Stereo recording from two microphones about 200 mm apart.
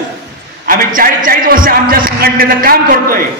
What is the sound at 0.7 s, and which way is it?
A man's voice, 45° right (ahead or behind).